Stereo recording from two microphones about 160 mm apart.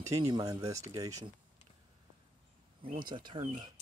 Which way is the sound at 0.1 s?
25° right (ahead or behind).